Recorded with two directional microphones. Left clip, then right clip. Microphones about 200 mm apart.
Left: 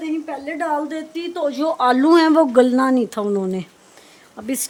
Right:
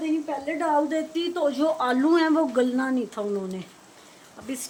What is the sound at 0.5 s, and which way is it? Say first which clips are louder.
A woman's voice: left 1 dB; 20° left (ahead or behind).